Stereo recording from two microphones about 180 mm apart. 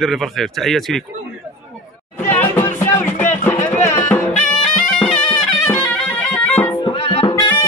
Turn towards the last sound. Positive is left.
turn(degrees=30)  # may be behind; listen again after turning